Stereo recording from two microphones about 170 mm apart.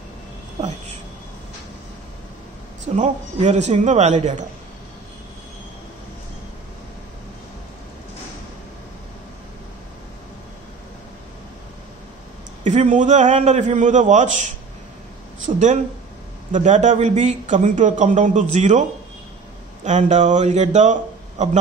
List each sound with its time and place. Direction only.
3.0 s a man's voice: 45° right (ahead or behind)
12.6 s a man's voice: 45° right (ahead or behind)
15.4 s a man's voice: 45° right (ahead or behind)